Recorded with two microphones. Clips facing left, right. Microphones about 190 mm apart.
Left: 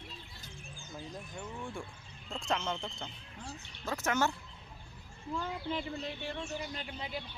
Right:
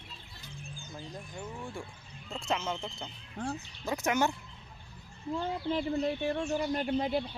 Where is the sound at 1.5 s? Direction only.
5° right (ahead or behind).